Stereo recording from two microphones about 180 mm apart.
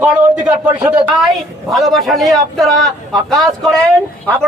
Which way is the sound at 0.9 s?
5° right (ahead or behind).